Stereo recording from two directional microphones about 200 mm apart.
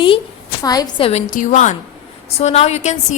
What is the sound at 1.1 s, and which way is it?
A woman's voice, 35° left (ahead or behind).